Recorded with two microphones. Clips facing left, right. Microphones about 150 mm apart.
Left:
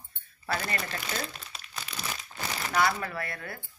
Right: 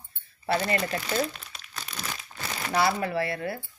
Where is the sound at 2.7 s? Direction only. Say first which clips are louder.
Right 3 dB; 30° right (ahead or behind).